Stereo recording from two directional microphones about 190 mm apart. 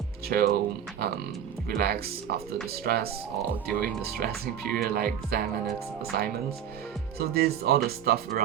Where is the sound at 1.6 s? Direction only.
55° right (ahead or behind).